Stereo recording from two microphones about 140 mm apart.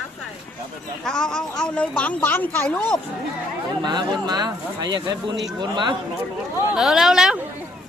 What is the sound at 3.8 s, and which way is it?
Speech, 30° right (ahead or behind).